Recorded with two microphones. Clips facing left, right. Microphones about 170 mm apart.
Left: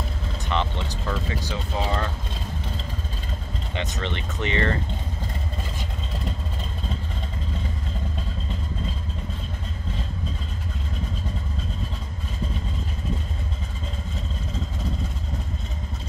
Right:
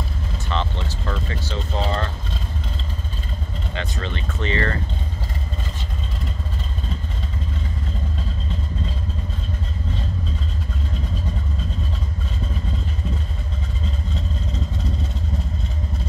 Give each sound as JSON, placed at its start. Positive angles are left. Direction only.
{"t": 0.5, "sound": "vehicle", "side_deg": 15}
{"t": 1.1, "sound": "a sound", "side_deg": 10}
{"t": 3.7, "sound": "speech", "side_deg": 20}